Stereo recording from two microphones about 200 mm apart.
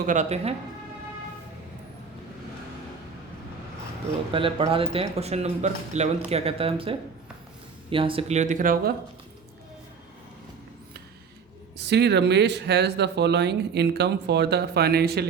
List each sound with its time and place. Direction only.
0.0 s speech: 40° right (ahead or behind)
4.3 s speech: 25° right (ahead or behind); by 8.9 s 45° right (ahead or behind)
11.8 s speech: 55° right (ahead or behind)